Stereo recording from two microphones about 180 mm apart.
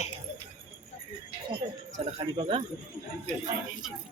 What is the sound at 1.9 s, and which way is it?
Speech, 30° right (ahead or behind).